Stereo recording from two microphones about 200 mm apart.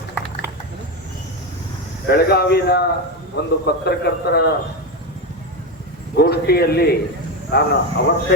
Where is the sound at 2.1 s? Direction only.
50° left (ahead or behind).